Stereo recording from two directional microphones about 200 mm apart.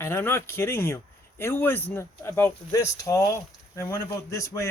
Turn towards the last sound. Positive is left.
turn(degrees=15)  # may be behind; listen again after turning